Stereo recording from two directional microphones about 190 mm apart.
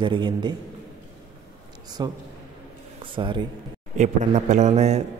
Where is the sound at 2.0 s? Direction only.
20° right (ahead or behind).